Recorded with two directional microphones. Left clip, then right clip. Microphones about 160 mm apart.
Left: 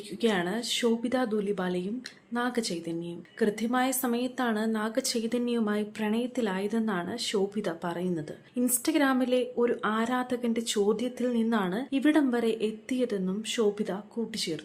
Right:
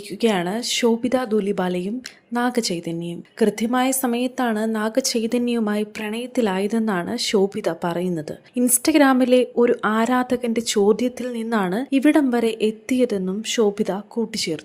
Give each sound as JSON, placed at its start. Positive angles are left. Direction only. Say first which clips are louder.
{"t": 0.2, "sound": "a woman's voice", "louder": "right 7 dB", "side_deg": -40}